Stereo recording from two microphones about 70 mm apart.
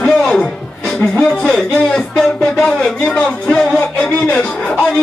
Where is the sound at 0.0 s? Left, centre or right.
Centre.